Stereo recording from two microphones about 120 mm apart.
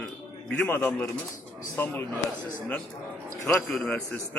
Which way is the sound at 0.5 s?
15° left (ahead or behind).